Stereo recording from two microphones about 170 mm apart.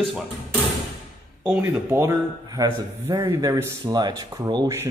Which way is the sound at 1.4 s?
10° right (ahead or behind).